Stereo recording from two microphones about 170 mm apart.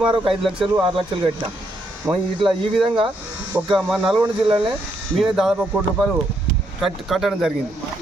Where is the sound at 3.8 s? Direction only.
Centre (ahead or behind).